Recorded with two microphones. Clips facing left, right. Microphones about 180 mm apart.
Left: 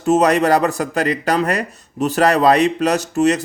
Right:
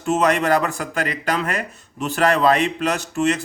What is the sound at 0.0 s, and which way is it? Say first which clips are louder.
Speech: left 5 dB; 40° left (ahead or behind).